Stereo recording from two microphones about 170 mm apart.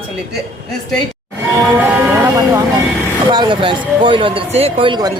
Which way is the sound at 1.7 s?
10° right (ahead or behind).